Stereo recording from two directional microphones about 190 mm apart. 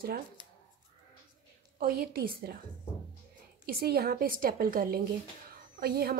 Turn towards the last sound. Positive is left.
turn(degrees=-55)  # may be behind; listen again after turning